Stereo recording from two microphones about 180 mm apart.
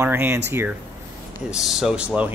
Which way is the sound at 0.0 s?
15° right (ahead or behind).